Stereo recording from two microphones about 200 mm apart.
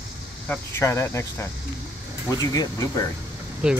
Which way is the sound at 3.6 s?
5° right (ahead or behind).